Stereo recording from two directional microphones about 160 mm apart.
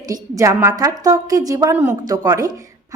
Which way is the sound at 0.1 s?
20° right (ahead or behind).